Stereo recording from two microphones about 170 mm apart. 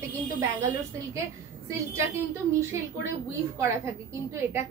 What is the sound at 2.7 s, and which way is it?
A woman's voice, 15° right (ahead or behind).